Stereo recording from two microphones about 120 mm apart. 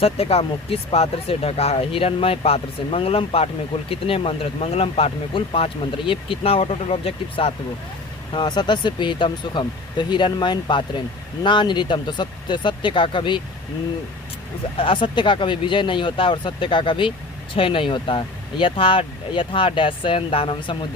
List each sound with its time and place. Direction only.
0.0 s speech: 55° left (ahead or behind)
8.3 s speech: 40° left (ahead or behind)
14.8 s speech: 45° left (ahead or behind)